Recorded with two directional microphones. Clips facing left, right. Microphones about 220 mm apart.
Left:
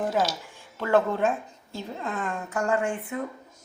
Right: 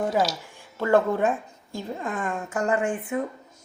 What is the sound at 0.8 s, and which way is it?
A woman's voice, 15° right (ahead or behind).